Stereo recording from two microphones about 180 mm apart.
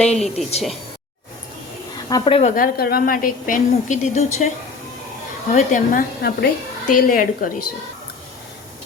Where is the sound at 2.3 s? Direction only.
45° left (ahead or behind).